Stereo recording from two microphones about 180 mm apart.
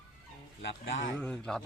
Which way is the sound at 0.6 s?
90° left.